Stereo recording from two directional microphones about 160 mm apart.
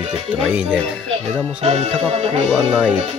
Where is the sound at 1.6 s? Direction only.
40° right (ahead or behind).